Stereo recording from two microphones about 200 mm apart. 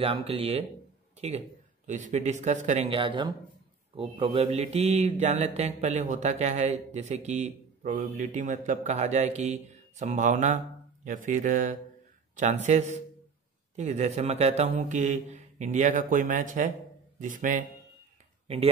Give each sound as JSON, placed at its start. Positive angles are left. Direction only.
{"t": 0.0, "sound": "speech", "side_deg": -25}
{"t": 1.9, "sound": "speech", "side_deg": -40}